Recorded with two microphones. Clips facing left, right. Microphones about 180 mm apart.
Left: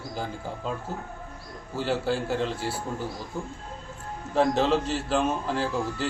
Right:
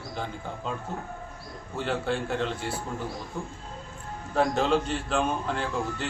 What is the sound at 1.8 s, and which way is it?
Speech, 5° left (ahead or behind).